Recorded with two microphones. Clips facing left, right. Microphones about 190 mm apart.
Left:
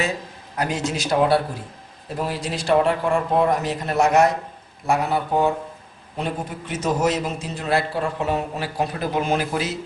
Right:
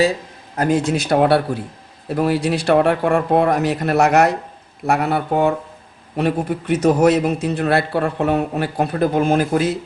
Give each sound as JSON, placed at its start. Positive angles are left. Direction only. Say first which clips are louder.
{"t": 0.5, "sound": "a man's voice", "louder": "right 7 dB", "side_deg": -50}